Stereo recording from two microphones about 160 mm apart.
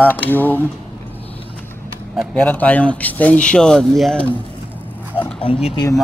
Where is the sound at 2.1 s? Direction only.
10° left (ahead or behind).